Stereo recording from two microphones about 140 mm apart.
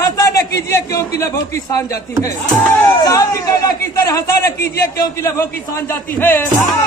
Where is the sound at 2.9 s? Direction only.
25° left (ahead or behind).